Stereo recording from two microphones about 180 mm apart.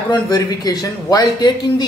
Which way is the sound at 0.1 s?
20° left (ahead or behind).